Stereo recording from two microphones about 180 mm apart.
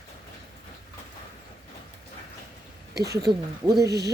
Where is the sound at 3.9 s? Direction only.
65° right (ahead or behind).